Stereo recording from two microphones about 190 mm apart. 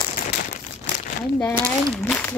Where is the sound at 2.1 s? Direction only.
10° left (ahead or behind).